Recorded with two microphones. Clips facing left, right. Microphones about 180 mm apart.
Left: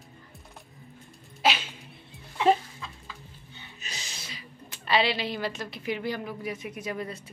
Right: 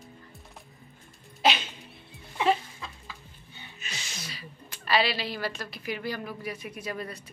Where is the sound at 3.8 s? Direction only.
35° left (ahead or behind).